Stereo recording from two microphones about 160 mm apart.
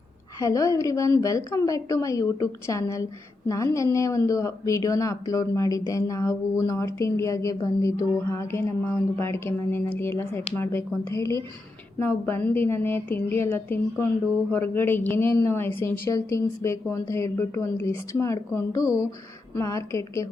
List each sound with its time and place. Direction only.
0.3 s a woman's voice: 20° left (ahead or behind)